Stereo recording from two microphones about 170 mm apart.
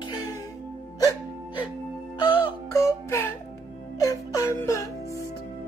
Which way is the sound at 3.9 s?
20° left (ahead or behind).